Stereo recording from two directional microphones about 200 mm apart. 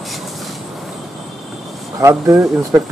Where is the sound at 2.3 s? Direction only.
Centre (ahead or behind).